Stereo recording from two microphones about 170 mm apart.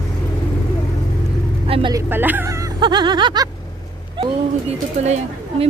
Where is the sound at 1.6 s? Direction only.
35° right (ahead or behind).